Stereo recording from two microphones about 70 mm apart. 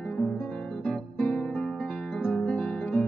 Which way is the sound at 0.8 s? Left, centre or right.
Centre.